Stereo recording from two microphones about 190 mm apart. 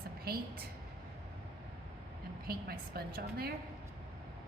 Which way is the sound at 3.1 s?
55° right (ahead or behind).